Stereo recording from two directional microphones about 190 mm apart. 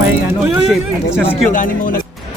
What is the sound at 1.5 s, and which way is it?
Speech, 45° left (ahead or behind).